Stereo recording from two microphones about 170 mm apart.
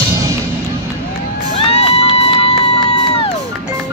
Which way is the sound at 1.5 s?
35° left (ahead or behind).